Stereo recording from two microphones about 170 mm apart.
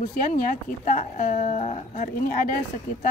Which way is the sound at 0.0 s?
50° left (ahead or behind).